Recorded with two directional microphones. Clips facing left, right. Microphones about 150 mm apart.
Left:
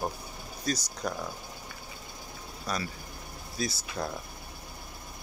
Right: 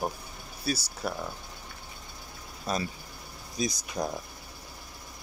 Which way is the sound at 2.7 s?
25° right (ahead or behind).